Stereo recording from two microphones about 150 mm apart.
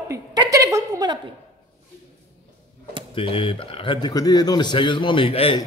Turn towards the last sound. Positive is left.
turn(degrees=35)  # may be behind; listen again after turning